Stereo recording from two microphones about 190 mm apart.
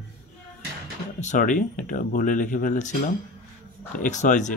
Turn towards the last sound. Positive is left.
turn(degrees=40)  # may be behind; listen again after turning